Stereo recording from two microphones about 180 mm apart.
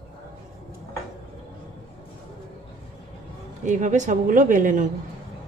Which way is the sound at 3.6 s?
45° right (ahead or behind).